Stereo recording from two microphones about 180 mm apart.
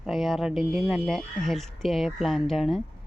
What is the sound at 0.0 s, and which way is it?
Speech, centre (ahead or behind).